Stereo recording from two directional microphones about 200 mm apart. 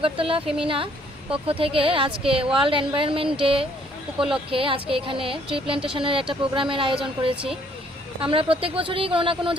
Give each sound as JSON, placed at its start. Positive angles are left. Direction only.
{"t": 0.0, "sound": "speech", "side_deg": -25}